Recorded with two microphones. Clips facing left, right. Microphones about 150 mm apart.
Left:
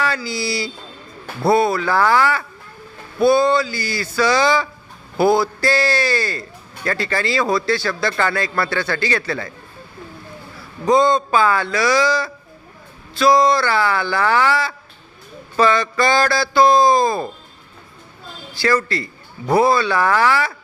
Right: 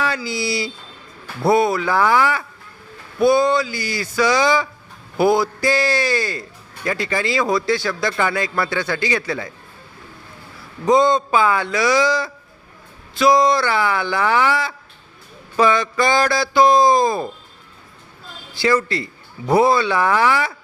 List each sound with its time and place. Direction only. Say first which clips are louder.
0.0 s speech: even; 20° right (ahead or behind)
10.8 s speech: even; 20° right (ahead or behind)
18.5 s speech: right 1 dB; 20° right (ahead or behind)